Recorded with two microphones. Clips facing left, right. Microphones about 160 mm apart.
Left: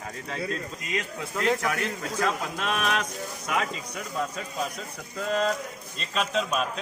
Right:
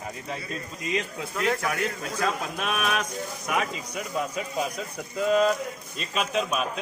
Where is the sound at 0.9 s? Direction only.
20° right (ahead or behind).